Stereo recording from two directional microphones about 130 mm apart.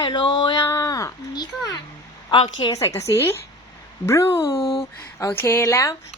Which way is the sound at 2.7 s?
25° left (ahead or behind).